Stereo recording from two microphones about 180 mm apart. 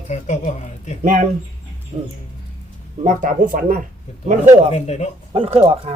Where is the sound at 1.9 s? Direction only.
25° right (ahead or behind).